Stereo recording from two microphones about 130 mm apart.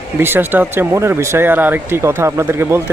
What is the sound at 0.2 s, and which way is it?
Speech, 15° right (ahead or behind).